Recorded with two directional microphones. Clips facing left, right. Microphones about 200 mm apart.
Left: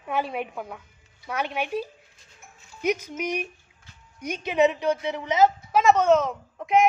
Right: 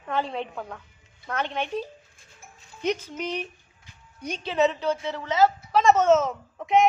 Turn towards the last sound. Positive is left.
turn(degrees=0)  # may be behind; listen again after turning